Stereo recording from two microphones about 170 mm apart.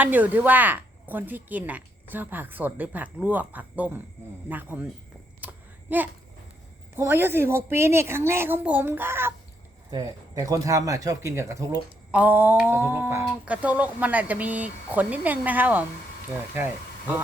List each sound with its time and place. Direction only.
0.0 s speech: 10° right (ahead or behind)
5.4 s a sound: 10° right (ahead or behind)
6.9 s speech: 15° right (ahead or behind)